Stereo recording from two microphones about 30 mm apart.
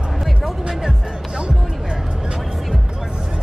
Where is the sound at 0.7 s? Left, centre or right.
Centre.